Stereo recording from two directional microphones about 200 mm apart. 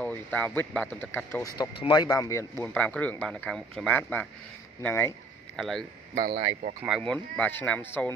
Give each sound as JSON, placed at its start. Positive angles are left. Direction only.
{"t": 0.0, "sound": "speech", "side_deg": 10}
{"t": 1.6, "sound": "speech", "side_deg": 20}
{"t": 6.1, "sound": "speech", "side_deg": -45}
{"t": 7.0, "sound": "speech", "side_deg": 5}